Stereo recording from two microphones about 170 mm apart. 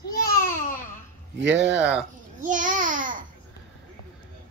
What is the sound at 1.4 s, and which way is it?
Speech, 90° right.